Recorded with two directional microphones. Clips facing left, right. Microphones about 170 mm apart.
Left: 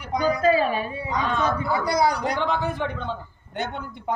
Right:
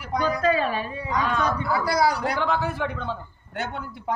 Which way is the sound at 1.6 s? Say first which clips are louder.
Even; centre (ahead or behind).